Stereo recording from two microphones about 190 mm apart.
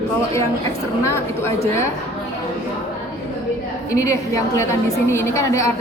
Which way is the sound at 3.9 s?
15° left (ahead or behind).